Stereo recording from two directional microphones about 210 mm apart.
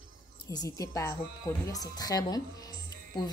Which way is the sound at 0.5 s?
15° left (ahead or behind).